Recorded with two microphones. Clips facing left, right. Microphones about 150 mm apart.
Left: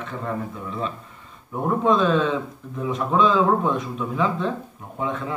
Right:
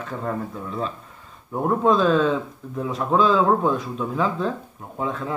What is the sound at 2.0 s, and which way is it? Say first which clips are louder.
A man's voice: right 2 dB; 35° right (ahead or behind).